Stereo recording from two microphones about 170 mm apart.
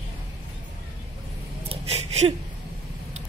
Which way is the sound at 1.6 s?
40° right (ahead or behind).